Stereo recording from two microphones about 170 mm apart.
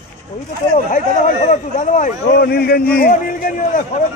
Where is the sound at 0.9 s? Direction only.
45° left (ahead or behind).